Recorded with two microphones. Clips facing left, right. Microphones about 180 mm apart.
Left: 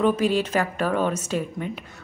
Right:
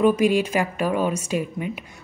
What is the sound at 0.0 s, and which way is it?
A woman's voice, 10° right (ahead or behind).